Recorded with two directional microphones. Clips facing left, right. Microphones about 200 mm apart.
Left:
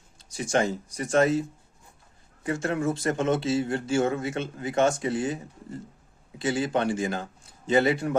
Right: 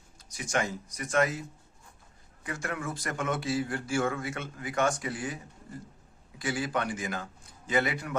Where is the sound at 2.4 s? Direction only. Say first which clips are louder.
Left 9 dB; 25° left (ahead or behind).